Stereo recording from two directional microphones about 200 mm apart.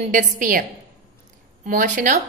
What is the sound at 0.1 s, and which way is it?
A woman's voice, 40° right (ahead or behind).